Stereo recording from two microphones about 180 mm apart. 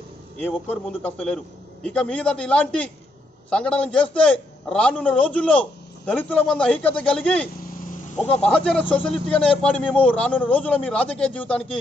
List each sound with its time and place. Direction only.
0.4 s a man's voice: 10° left (ahead or behind)
7.6 s vehicle: 50° left (ahead or behind)
8.3 s a man's voice: 5° left (ahead or behind)